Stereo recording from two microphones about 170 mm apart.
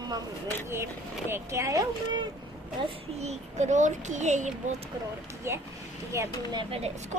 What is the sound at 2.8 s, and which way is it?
A child's voice, 35° right (ahead or behind).